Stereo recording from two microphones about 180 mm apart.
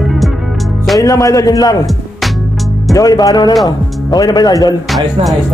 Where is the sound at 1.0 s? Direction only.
20° left (ahead or behind).